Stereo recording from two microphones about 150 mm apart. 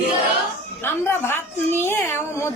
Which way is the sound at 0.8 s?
15° left (ahead or behind).